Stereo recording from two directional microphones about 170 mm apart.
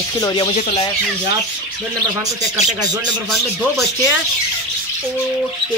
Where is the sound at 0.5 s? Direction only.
45° left (ahead or behind).